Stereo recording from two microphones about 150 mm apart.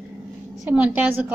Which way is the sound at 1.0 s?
10° right (ahead or behind).